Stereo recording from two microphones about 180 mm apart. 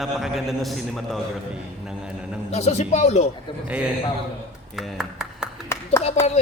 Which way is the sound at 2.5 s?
35° left (ahead or behind).